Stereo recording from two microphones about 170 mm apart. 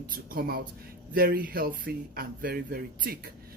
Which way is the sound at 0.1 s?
60° right (ahead or behind).